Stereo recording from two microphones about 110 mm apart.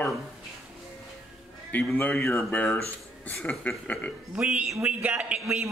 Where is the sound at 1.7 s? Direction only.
15° left (ahead or behind).